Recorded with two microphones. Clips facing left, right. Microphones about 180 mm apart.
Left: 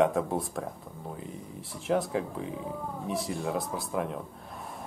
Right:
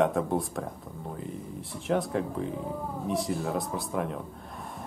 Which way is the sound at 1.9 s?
Centre (ahead or behind).